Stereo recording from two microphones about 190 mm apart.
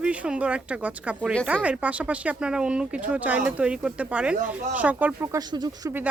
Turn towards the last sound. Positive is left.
turn(degrees=-20)  # may be behind; listen again after turning